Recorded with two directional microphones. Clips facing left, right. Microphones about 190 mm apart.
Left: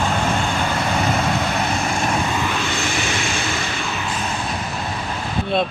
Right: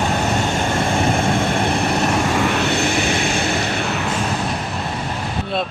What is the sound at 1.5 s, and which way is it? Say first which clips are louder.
Vehicle: right 3 dB; 60° right (ahead or behind).